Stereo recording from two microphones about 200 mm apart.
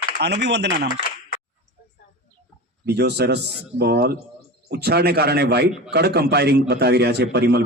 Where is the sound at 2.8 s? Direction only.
55° right (ahead or behind).